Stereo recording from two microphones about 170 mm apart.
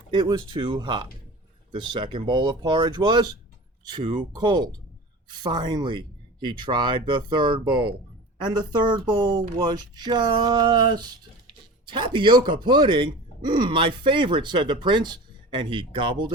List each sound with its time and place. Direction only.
0.1 s speech: 25° right (ahead or behind)